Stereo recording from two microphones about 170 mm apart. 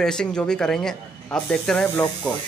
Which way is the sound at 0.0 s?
5° left (ahead or behind).